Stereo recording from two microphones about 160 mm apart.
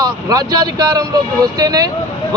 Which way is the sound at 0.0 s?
20° right (ahead or behind).